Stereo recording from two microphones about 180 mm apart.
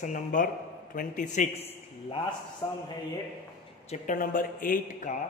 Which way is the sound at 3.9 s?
50° left (ahead or behind).